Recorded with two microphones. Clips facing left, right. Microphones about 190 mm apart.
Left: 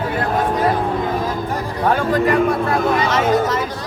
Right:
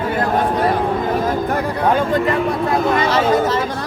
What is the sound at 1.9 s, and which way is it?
Speech, 25° right (ahead or behind).